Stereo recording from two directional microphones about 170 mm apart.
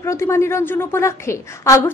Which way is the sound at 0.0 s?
15° left (ahead or behind).